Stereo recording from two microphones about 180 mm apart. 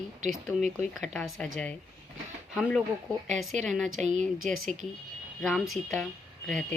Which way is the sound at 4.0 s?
40° right (ahead or behind).